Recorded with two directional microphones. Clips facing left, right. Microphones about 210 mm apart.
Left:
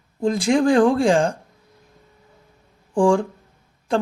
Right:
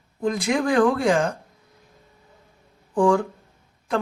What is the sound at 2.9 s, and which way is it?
Speech, 30° left (ahead or behind).